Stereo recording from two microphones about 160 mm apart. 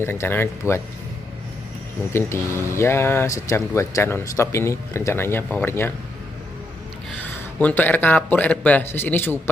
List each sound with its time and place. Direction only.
0.0 s speech: 15° left (ahead or behind)
2.1 s speech: 15° left (ahead or behind)
7.2 s speech: 10° left (ahead or behind)